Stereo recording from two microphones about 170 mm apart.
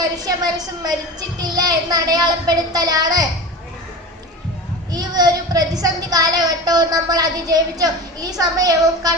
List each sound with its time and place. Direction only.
0.0 s a woman's voice: 20° right (ahead or behind)
4.9 s a woman's voice: 25° right (ahead or behind)